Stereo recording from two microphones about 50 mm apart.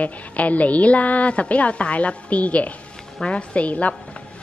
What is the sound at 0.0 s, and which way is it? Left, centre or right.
Speech, left.